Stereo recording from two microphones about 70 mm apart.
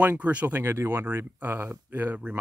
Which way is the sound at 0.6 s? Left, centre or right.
Right.